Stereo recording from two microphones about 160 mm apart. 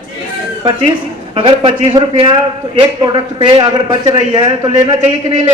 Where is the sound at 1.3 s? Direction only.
30° right (ahead or behind).